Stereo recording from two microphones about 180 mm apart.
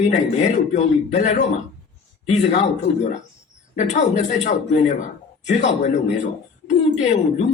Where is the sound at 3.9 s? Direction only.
40° left (ahead or behind).